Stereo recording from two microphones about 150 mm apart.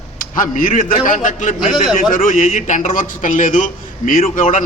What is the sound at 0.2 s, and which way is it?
A man's voice, 60° left (ahead or behind).